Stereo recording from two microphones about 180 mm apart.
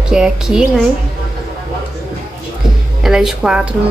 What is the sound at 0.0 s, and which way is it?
Speech, 5° right (ahead or behind).